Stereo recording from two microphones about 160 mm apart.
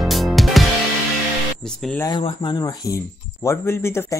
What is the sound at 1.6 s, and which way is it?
Speech, 5° left (ahead or behind).